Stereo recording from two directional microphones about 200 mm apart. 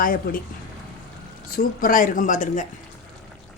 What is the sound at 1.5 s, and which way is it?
Speech, 45° left (ahead or behind).